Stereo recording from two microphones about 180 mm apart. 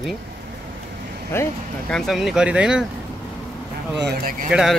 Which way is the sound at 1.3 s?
10° left (ahead or behind).